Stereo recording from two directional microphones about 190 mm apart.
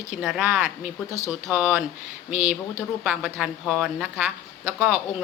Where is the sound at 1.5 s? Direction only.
5° right (ahead or behind).